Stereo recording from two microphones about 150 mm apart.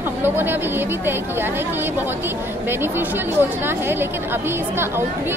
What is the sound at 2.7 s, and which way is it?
A woman's voice, 15° right (ahead or behind).